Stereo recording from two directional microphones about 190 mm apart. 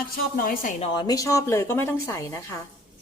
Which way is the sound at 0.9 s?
20° left (ahead or behind).